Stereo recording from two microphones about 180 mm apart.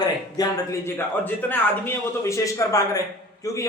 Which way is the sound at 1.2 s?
10° left (ahead or behind).